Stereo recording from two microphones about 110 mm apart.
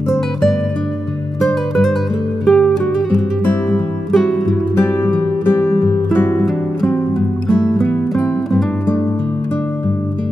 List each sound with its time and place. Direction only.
0.1 s music: centre (ahead or behind)
4.7 s music: 20° left (ahead or behind)
7.2 s music: 5° left (ahead or behind)